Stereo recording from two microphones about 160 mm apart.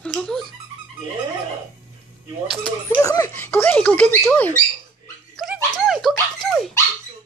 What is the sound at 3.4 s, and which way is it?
Speech, 10° left (ahead or behind).